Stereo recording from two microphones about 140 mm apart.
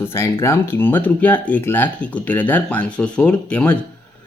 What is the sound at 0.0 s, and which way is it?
Speech, 20° left (ahead or behind).